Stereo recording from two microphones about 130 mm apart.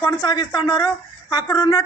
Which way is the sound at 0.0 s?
35° left (ahead or behind).